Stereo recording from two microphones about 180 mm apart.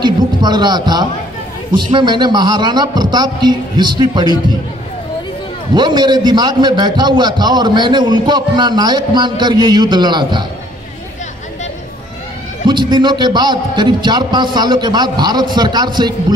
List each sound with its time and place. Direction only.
0.0 s a man's voice: 25° right (ahead or behind)
5.8 s a man's voice: 25° right (ahead or behind)
12.6 s a man's voice: 25° right (ahead or behind)